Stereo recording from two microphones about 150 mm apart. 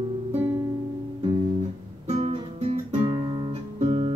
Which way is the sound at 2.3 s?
45° right (ahead or behind).